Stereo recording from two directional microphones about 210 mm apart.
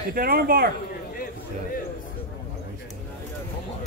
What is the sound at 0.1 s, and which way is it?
Speech, 45° right (ahead or behind).